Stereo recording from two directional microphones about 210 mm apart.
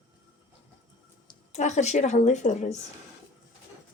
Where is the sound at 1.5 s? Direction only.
35° left (ahead or behind).